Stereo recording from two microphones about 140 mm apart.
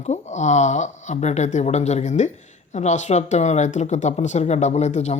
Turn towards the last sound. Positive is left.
turn(degrees=55)  # may be behind; listen again after turning